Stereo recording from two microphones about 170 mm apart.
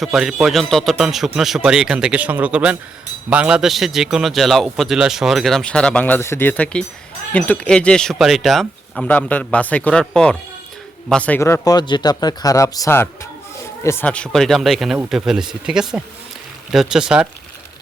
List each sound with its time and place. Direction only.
0.0 s a man's voice: centre (ahead or behind)